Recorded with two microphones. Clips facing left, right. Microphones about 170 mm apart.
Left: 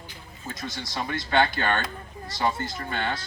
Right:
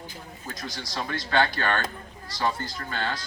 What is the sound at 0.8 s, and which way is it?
Speech, 25° left (ahead or behind).